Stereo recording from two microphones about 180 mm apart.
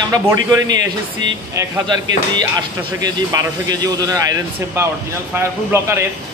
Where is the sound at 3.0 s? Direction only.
20° right (ahead or behind).